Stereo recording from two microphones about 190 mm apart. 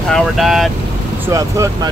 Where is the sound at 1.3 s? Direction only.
15° right (ahead or behind).